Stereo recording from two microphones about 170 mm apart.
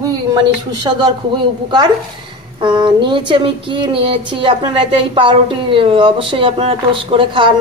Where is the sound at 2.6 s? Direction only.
30° right (ahead or behind).